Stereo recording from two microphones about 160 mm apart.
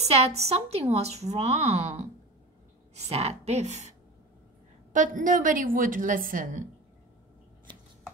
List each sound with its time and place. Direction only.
0.0 s a woman's voice: 40° right (ahead or behind)
4.9 s a woman's voice: 55° right (ahead or behind)